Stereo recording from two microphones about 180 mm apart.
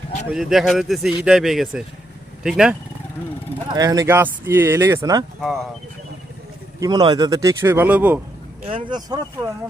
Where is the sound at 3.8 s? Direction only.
20° right (ahead or behind).